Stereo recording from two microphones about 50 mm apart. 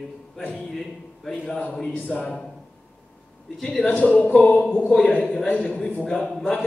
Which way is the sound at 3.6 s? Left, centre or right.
Left.